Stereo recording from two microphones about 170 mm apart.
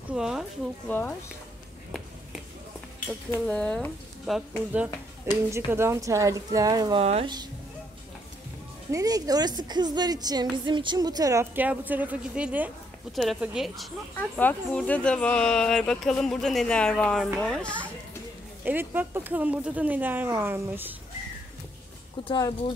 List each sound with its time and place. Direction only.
0.1 s speech: 5° right (ahead or behind)
0.8 s speech: 10° left (ahead or behind)
3.3 s speech: 5° left (ahead or behind)
4.7 s a woman's voice: 15° right (ahead or behind)
7.0 s speech: 35° right (ahead or behind)
8.9 s a woman's voice: 20° right (ahead or behind); by 13.8 s 5° right (ahead or behind)
14.1 s speech: 10° left (ahead or behind)
18.6 s speech: 10° right (ahead or behind)